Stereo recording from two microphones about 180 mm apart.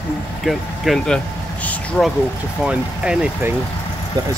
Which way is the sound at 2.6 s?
5° right (ahead or behind).